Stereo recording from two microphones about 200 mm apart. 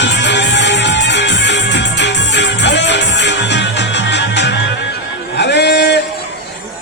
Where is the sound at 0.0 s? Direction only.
60° left (ahead or behind).